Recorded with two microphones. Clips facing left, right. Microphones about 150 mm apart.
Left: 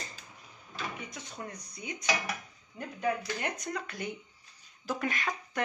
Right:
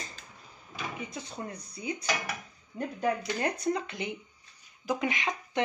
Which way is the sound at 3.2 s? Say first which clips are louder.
Right 4 dB; 30° right (ahead or behind).